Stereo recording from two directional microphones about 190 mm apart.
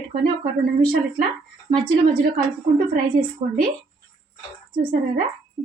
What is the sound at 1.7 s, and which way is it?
Speech, 45° right (ahead or behind).